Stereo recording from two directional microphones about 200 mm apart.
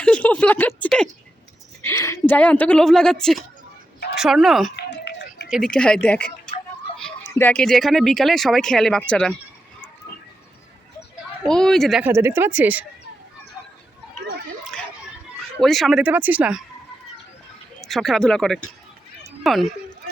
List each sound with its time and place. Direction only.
0.0 s a sound: 5° left (ahead or behind)
1.8 s a woman's voice: 15° left (ahead or behind)
4.8 s run: 60° left (ahead or behind)
5.5 s speech: centre (ahead or behind)
11.4 s speech: 5° left (ahead or behind)
12.1 s speech: 15° right (ahead or behind)
15.6 s speech: centre (ahead or behind)
17.7 s speech: centre (ahead or behind)
19.2 s a sound: centre (ahead or behind)